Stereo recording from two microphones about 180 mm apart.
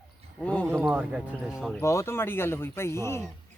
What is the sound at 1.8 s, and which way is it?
Speech, 15° left (ahead or behind).